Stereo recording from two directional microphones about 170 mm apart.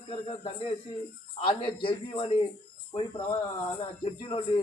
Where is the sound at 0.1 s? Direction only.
35° left (ahead or behind).